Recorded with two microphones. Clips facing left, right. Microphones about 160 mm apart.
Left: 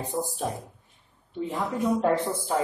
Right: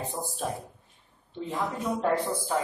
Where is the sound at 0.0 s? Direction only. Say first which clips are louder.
Left 3 dB; 15° left (ahead or behind).